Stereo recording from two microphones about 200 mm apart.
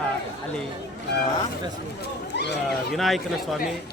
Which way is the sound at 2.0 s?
60° left (ahead or behind).